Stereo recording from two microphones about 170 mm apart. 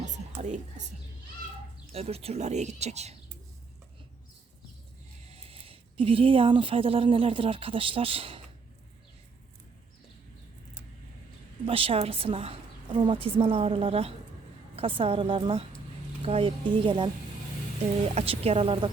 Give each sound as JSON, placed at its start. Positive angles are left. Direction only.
{"t": 1.9, "sound": "a woman's voice", "side_deg": -35}
{"t": 5.3, "sound": "speech", "side_deg": -35}
{"t": 11.6, "sound": "a woman's voice", "side_deg": -30}
{"t": 18.1, "sound": "a woman's voice", "side_deg": -40}